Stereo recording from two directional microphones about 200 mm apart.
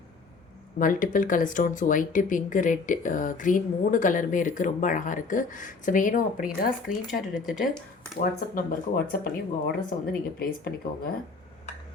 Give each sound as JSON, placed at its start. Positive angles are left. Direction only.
{"t": 0.8, "sound": "speech", "side_deg": 40}
{"t": 6.9, "sound": "speech", "side_deg": 90}
{"t": 7.4, "sound": "speech", "side_deg": 0}
{"t": 8.2, "sound": "speech", "side_deg": 45}